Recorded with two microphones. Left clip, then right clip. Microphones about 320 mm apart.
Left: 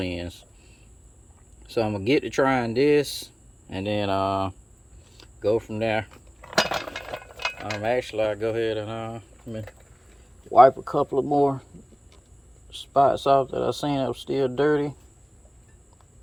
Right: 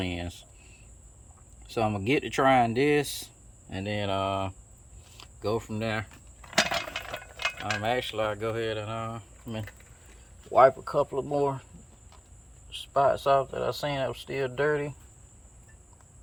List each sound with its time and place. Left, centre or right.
0.0 s speech: centre
1.6 s speech: centre
5.4 s speech: centre
6.4 s chink: centre
7.8 s speech: centre
10.6 s speech: centre
12.7 s speech: left